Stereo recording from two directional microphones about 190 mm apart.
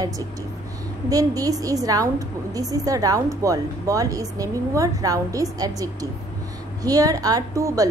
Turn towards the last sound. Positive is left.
turn(degrees=-15)  # may be behind; listen again after turning